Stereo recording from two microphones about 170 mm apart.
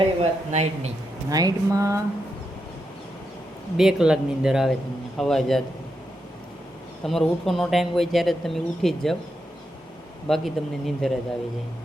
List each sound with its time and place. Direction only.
0.0 s speech: 35° right (ahead or behind)
1.3 s speech: 20° right (ahead or behind)
3.8 s speech: 5° right (ahead or behind)
7.0 s speech: centre (ahead or behind)
10.2 s speech: centre (ahead or behind)